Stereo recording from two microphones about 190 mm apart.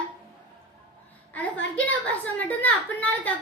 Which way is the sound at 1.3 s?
5° left (ahead or behind).